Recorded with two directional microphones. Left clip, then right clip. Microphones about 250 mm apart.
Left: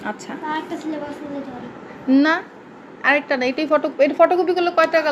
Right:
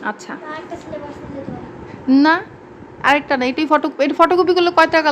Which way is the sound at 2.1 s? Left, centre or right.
Right.